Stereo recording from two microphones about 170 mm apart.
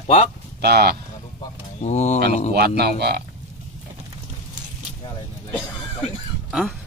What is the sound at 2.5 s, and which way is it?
Speech, 65° right (ahead or behind).